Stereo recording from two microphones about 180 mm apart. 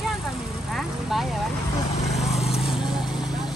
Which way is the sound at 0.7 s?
Centre (ahead or behind).